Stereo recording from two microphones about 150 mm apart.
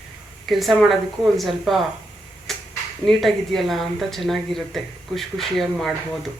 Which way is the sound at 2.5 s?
Centre (ahead or behind).